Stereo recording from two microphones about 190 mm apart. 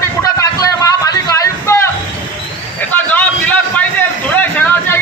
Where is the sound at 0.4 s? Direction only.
20° left (ahead or behind).